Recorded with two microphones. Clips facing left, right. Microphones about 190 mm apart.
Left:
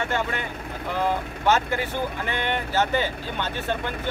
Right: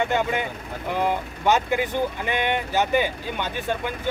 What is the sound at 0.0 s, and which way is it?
Speech, 15° right (ahead or behind).